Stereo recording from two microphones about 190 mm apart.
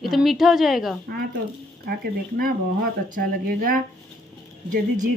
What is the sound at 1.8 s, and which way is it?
Speech, 50° right (ahead or behind).